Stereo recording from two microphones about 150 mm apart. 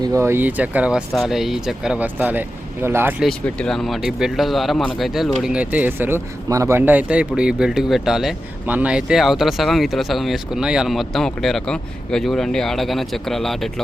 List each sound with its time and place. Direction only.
0.0 s speech: 20° right (ahead or behind)
3.2 s speech: 5° left (ahead or behind)